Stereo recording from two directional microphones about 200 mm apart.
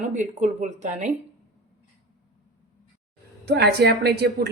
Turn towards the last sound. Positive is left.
turn(degrees=-55)  # may be behind; listen again after turning